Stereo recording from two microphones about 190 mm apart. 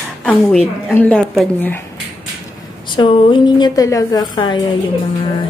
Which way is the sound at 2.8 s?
25° left (ahead or behind).